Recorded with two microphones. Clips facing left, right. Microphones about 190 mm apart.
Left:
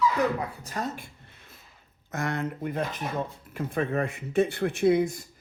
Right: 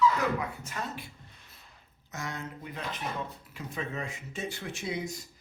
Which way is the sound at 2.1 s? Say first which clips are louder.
Left 8 dB; 60° left (ahead or behind).